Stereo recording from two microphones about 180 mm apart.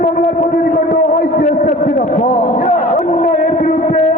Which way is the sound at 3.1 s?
40° left (ahead or behind).